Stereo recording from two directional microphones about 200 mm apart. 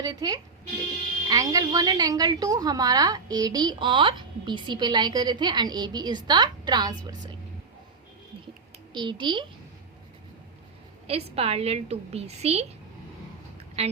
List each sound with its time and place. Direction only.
0.0 s a woman's voice: 20° right (ahead or behind)
8.9 s a woman's voice: 25° right (ahead or behind)
11.3 s a woman's voice: 30° right (ahead or behind)
13.8 s a woman's voice: 30° right (ahead or behind)